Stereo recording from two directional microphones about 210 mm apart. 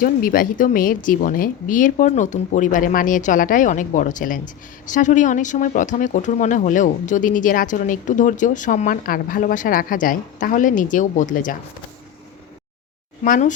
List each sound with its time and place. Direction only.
0.0 s speech: 40° left (ahead or behind)
13.2 s speech: 40° left (ahead or behind)